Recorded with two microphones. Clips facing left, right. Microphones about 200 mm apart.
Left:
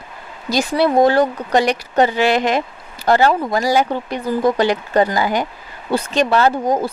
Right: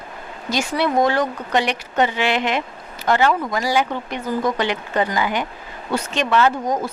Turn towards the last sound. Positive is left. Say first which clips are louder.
# left 3 dB
turn(degrees=30)  # may be behind; listen again after turning